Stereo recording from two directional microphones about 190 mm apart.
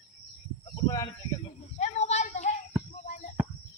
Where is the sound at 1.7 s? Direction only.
35° left (ahead or behind).